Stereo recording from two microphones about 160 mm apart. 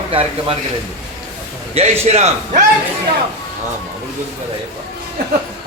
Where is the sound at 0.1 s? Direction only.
35° right (ahead or behind).